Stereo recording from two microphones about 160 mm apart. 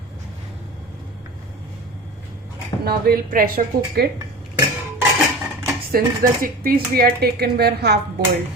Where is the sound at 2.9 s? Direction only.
70° right (ahead or behind).